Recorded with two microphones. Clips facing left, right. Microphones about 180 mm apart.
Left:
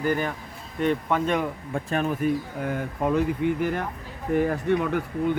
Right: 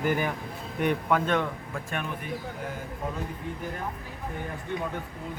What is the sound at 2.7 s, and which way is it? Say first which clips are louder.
Speech: left 10 dB; 70° left (ahead or behind).